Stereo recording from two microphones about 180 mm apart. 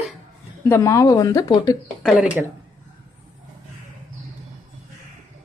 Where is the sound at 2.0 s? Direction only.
5° right (ahead or behind).